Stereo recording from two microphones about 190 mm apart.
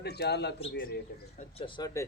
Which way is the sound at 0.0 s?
60° left (ahead or behind).